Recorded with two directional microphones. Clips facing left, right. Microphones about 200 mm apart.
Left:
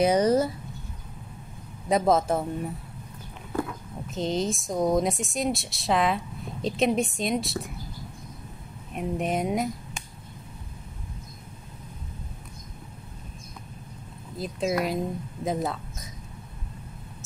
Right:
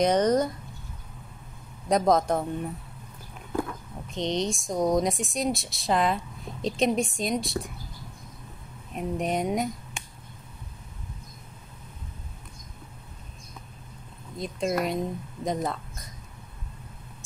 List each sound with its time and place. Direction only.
0.0 s speech: 10° left (ahead or behind)
1.9 s speech: 5° left (ahead or behind)
4.1 s speech: 5° left (ahead or behind)
8.9 s speech: centre (ahead or behind)
14.4 s speech: 5° left (ahead or behind)